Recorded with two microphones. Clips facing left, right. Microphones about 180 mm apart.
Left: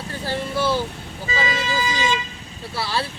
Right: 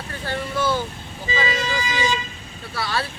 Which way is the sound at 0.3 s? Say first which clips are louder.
Left 1 dB; 30° left (ahead or behind).